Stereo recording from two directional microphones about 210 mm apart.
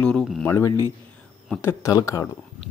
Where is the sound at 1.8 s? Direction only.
15° left (ahead or behind).